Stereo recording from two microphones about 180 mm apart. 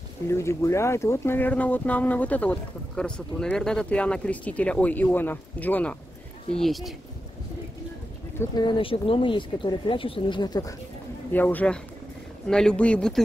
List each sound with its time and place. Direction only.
0.3 s a man's voice: 15° left (ahead or behind)
8.4 s speech: 25° left (ahead or behind)
11.3 s a man's voice: 10° left (ahead or behind)